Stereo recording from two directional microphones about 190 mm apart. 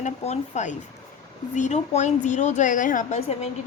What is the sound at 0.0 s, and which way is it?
A woman's voice, 40° left (ahead or behind).